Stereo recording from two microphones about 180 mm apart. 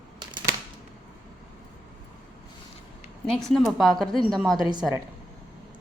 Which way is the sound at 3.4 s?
Centre (ahead or behind).